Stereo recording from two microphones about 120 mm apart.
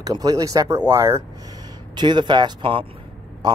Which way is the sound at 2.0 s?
40° right (ahead or behind).